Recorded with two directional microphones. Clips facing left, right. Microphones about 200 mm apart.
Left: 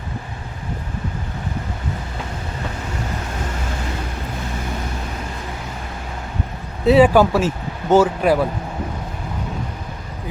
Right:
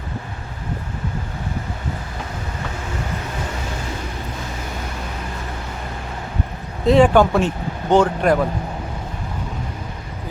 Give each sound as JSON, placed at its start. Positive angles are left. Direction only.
{"t": 6.8, "sound": "speech", "side_deg": 5}